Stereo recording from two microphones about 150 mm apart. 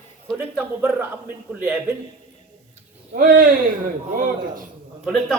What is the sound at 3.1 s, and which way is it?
Speech, 70° right (ahead or behind).